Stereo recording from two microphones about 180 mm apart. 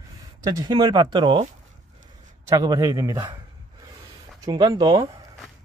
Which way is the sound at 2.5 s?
20° right (ahead or behind).